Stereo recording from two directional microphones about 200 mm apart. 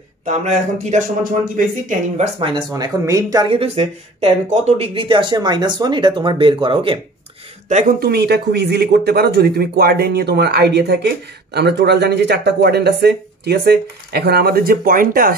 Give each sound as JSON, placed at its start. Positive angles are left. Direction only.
{"t": 0.2, "sound": "speech", "side_deg": -35}
{"t": 7.6, "sound": "speech", "side_deg": -40}